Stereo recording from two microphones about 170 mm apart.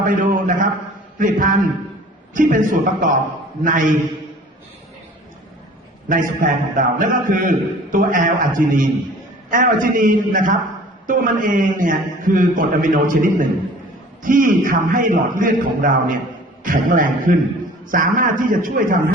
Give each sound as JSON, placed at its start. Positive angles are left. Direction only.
{"t": 0.0, "sound": "a man's voice", "side_deg": -50}
{"t": 6.1, "sound": "a man's voice", "side_deg": -50}